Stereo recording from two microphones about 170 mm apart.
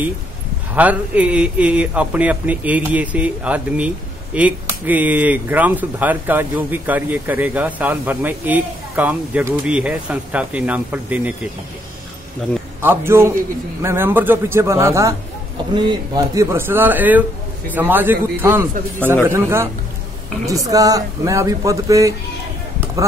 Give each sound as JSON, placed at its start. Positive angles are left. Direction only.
{"t": 0.7, "sound": "a man's voice", "side_deg": -10}
{"t": 12.8, "sound": "a man's voice", "side_deg": -15}